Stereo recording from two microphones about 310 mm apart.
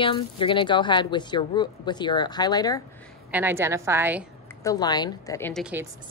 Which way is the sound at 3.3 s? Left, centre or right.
Centre.